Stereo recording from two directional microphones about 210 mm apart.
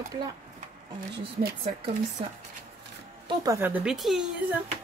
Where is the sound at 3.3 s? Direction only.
15° right (ahead or behind).